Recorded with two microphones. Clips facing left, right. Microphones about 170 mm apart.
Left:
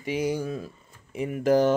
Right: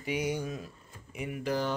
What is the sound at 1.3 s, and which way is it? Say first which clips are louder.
Speech: left 11 dB; 45° left (ahead or behind).